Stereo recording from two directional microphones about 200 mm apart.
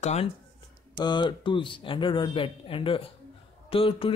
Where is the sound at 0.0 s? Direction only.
35° left (ahead or behind).